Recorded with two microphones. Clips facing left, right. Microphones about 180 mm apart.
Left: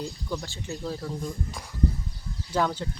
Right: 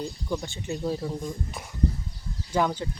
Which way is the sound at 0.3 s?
15° right (ahead or behind).